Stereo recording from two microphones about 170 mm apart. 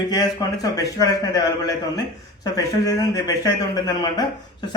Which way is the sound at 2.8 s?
20° left (ahead or behind).